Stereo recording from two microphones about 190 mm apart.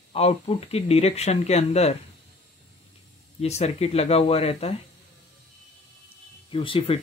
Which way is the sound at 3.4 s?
35° left (ahead or behind).